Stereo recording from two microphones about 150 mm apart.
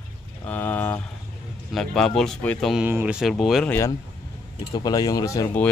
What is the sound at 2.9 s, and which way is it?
Speech, 15° right (ahead or behind).